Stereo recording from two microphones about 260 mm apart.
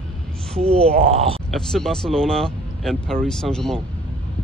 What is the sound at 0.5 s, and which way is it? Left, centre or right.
Speech, right.